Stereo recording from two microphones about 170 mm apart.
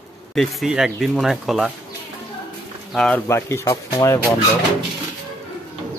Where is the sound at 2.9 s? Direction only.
Centre (ahead or behind).